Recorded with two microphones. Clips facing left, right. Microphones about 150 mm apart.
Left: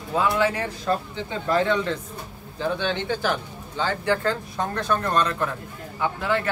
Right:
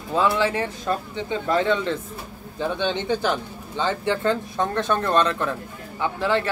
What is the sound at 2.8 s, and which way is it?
Speech, 20° right (ahead or behind).